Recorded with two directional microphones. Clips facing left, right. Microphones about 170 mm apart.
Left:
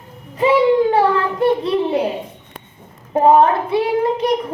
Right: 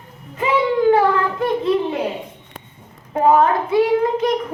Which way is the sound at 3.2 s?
30° left (ahead or behind).